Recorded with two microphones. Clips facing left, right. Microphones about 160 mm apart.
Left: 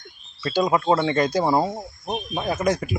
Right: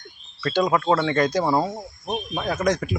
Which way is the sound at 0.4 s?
10° left (ahead or behind).